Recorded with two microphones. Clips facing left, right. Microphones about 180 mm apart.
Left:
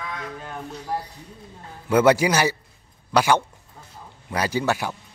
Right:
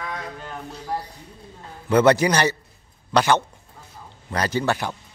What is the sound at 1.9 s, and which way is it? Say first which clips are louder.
Speech: right 1 dB; 10° left (ahead or behind).